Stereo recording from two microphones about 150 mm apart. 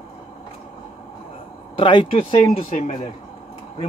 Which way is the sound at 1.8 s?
35° left (ahead or behind).